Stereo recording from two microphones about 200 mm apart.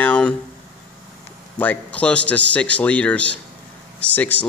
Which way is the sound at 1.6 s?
5° left (ahead or behind).